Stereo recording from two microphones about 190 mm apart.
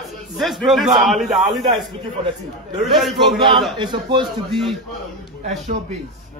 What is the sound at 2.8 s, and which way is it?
Speech, centre (ahead or behind).